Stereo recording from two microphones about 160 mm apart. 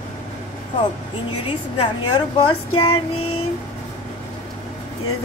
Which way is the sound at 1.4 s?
30° left (ahead or behind).